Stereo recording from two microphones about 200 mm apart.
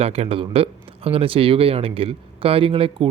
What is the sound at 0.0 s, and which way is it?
A man's voice, 30° right (ahead or behind).